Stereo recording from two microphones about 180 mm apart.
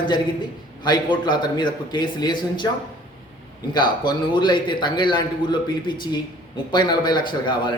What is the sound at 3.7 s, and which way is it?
Speech, 25° left (ahead or behind).